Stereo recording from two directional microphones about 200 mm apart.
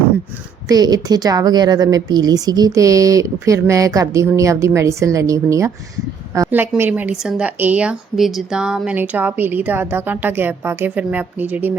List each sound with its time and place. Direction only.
0.7 s a woman's voice: 20° right (ahead or behind)